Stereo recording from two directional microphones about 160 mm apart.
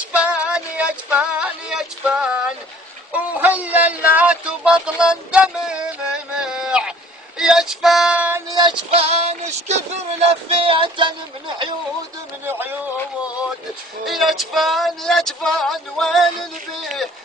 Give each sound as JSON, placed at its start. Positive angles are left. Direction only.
{"t": 0.1, "sound": "music", "side_deg": -5}
{"t": 6.4, "sound": "a sound", "side_deg": -5}
{"t": 7.3, "sound": "music", "side_deg": -5}
{"t": 8.5, "sound": "music", "side_deg": -30}
{"t": 10.5, "sound": "speech", "side_deg": -35}
{"t": 12.4, "sound": "music", "side_deg": -15}
{"t": 14.0, "sound": "a sound", "side_deg": 0}